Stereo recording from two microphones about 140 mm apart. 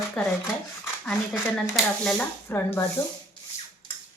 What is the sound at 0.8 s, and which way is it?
Speech, centre (ahead or behind).